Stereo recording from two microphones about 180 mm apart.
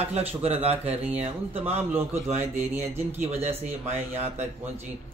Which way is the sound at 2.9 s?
10° right (ahead or behind).